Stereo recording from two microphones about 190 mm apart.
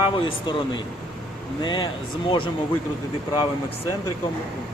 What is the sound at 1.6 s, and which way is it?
Speech, 25° left (ahead or behind).